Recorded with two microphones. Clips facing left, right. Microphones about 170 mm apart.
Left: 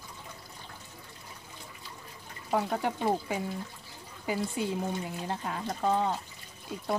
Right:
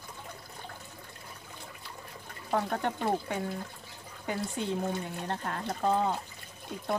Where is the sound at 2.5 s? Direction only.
5° left (ahead or behind).